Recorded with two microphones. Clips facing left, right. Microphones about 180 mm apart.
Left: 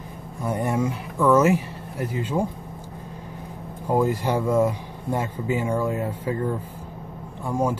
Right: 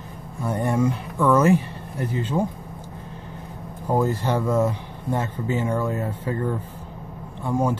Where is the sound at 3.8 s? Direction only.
10° left (ahead or behind).